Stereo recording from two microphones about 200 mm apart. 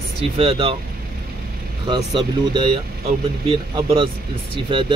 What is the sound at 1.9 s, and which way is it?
Speech, 25° right (ahead or behind).